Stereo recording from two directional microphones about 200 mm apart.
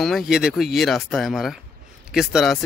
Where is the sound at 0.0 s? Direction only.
Centre (ahead or behind).